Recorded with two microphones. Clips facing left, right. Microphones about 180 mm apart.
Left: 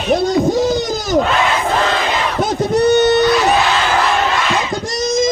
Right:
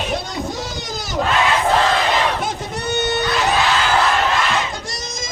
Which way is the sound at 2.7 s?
40° left (ahead or behind).